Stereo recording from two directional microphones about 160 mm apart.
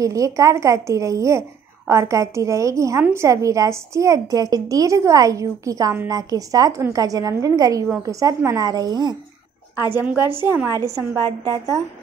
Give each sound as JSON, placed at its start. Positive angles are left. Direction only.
{"t": 0.0, "sound": "a woman's voice", "side_deg": -20}
{"t": 9.8, "sound": "a woman's voice", "side_deg": -15}